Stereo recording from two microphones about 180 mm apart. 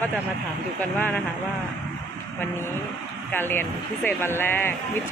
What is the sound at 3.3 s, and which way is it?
Speech, 10° left (ahead or behind).